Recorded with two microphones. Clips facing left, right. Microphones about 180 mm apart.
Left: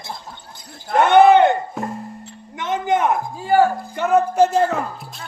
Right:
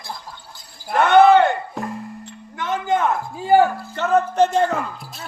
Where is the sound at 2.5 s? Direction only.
20° left (ahead or behind).